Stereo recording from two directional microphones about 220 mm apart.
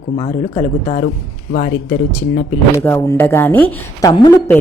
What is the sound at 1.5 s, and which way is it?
Speech, 40° left (ahead or behind).